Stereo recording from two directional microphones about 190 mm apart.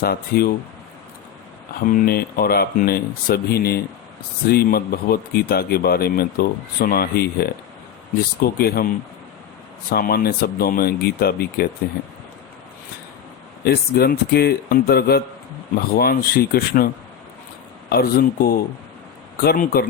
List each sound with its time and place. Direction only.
0.0 s speech: 50° left (ahead or behind)
1.9 s speech: 50° left (ahead or behind)
8.5 s speech: 55° left (ahead or behind)
9.9 s speech: 50° left (ahead or behind)
13.7 s a man's voice: 55° left (ahead or behind)